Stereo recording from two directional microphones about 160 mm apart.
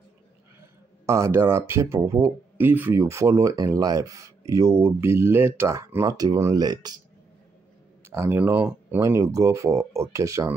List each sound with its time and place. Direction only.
0.6 s speech: 20° right (ahead or behind)
8.1 s speech: 15° right (ahead or behind)